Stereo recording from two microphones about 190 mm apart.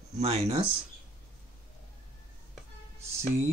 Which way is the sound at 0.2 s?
30° right (ahead or behind).